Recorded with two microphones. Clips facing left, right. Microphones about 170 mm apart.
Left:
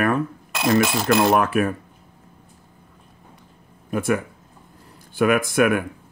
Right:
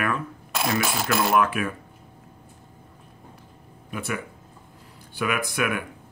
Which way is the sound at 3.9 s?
50° left (ahead or behind).